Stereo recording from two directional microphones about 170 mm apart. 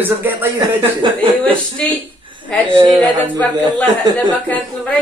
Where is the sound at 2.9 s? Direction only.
10° left (ahead or behind).